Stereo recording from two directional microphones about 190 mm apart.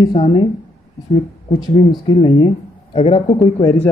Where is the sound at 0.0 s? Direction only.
25° left (ahead or behind).